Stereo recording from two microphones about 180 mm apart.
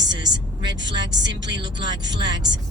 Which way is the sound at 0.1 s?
25° right (ahead or behind).